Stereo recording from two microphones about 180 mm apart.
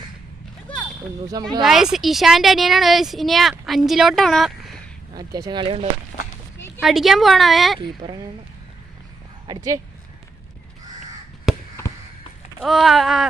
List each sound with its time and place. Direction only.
1.6 s a woman's voice: centre (ahead or behind)
5.1 s speech: 20° right (ahead or behind)
6.1 s run: 50° left (ahead or behind)
6.7 s a woman's voice: centre (ahead or behind)
9.5 s speech: 20° right (ahead or behind)
12.6 s a woman's voice: centre (ahead or behind)